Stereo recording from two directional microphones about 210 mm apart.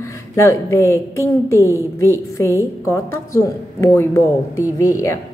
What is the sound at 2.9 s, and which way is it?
A woman's voice, 15° left (ahead or behind).